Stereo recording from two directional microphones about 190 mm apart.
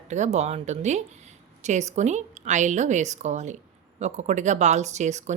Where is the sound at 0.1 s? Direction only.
35° right (ahead or behind).